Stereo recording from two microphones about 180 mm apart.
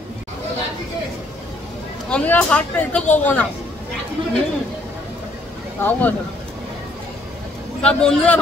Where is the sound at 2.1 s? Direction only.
5° left (ahead or behind).